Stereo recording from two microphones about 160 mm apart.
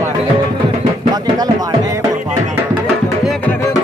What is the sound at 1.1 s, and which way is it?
Speech, 25° right (ahead or behind).